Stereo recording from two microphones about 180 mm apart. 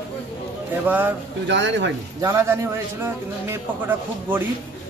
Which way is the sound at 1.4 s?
90° right.